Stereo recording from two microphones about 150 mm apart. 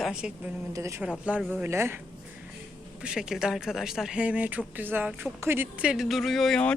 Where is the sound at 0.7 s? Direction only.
20° right (ahead or behind).